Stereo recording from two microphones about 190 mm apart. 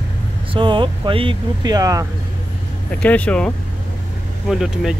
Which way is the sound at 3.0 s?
5° left (ahead or behind).